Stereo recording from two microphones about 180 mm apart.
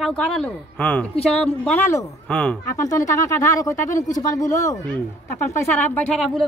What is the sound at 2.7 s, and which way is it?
Speech, 20° left (ahead or behind).